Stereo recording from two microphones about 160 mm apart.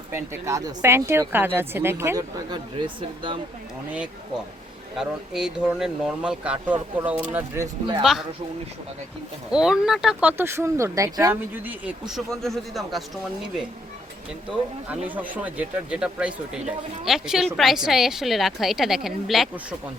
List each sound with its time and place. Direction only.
0.1 s speech: 20° right (ahead or behind)
2.5 s speech: 30° right (ahead or behind)
4.9 s speech: 5° right (ahead or behind)
9.5 s speech: 5° right (ahead or behind)
14.5 s speech: 10° right (ahead or behind)